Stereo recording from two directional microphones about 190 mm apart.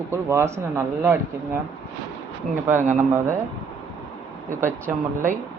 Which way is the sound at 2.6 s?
10° right (ahead or behind).